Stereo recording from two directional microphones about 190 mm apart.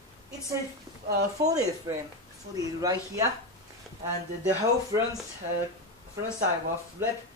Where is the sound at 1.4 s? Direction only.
20° right (ahead or behind).